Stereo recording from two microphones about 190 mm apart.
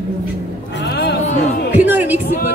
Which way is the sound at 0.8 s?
60° left (ahead or behind).